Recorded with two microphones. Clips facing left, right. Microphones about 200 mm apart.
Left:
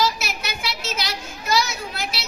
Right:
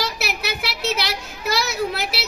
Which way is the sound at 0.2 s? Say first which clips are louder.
Right 3 dB; 65° right (ahead or behind).